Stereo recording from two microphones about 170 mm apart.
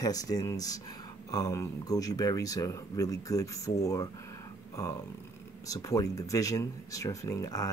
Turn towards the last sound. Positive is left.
turn(degrees=20)  # may be behind; listen again after turning